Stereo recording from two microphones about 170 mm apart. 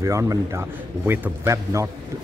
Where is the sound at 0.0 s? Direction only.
20° right (ahead or behind).